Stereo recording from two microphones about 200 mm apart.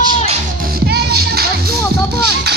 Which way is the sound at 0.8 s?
50° right (ahead or behind).